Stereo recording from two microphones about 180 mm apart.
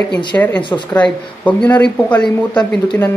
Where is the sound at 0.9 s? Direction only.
10° left (ahead or behind).